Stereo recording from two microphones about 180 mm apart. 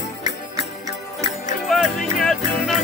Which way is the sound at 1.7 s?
Centre (ahead or behind).